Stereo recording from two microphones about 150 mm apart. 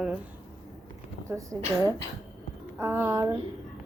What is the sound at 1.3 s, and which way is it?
A woman's voice, 20° right (ahead or behind).